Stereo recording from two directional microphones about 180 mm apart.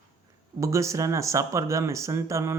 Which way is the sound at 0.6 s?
15° right (ahead or behind).